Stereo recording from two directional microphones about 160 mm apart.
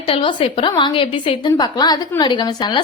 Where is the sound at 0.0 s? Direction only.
35° left (ahead or behind).